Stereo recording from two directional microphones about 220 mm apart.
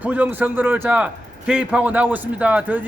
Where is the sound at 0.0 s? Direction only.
5° right (ahead or behind).